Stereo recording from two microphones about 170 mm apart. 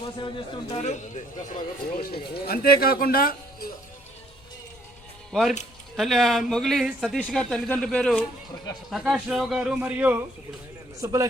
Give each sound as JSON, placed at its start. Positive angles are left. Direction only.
{"t": 0.0, "sound": "a man's voice", "side_deg": 30}
{"t": 2.0, "sound": "speech", "side_deg": 65}
{"t": 5.3, "sound": "a man's voice", "side_deg": 0}